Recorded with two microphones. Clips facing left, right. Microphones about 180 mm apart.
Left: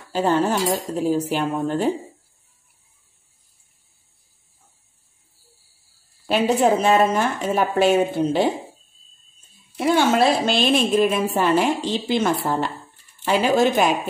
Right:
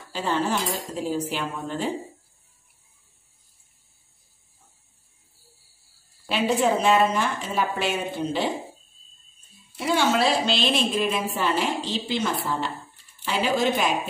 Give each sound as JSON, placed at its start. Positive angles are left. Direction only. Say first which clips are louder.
{"t": 0.1, "sound": "a woman's voice", "louder": "left 6 dB", "side_deg": 45}
{"t": 6.2, "sound": "a woman's voice", "louder": "left 4 dB", "side_deg": 45}
{"t": 9.9, "sound": "a woman's voice", "louder": "left 3 dB", "side_deg": 50}